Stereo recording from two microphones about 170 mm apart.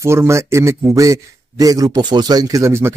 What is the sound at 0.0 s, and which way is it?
A man's voice, 15° right (ahead or behind).